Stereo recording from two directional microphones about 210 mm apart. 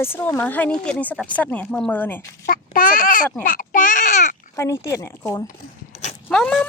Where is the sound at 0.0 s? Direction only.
10° left (ahead or behind).